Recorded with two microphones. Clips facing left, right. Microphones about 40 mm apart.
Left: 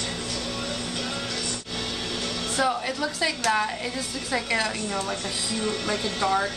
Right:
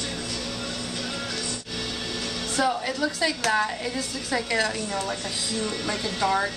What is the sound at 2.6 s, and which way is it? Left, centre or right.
A woman's voice, centre.